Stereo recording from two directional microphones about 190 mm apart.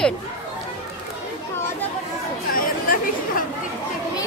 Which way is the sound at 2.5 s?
45° left (ahead or behind).